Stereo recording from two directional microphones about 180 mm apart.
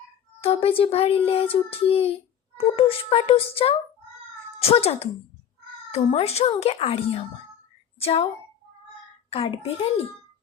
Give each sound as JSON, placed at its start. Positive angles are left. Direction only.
{"t": 0.4, "sound": "a child's voice", "side_deg": 35}
{"t": 9.3, "sound": "a child's voice", "side_deg": 30}